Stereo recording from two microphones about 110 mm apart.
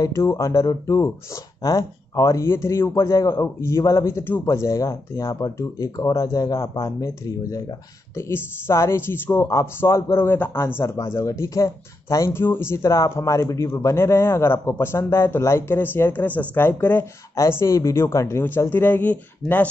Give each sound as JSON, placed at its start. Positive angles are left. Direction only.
{"t": 0.0, "sound": "speech", "side_deg": 25}
{"t": 8.2, "sound": "speech", "side_deg": 25}